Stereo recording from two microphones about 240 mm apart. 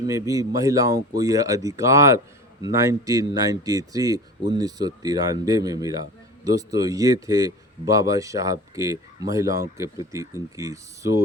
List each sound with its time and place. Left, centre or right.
0.0 s speech: centre